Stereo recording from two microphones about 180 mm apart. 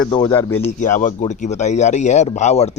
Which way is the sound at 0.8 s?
45° left (ahead or behind).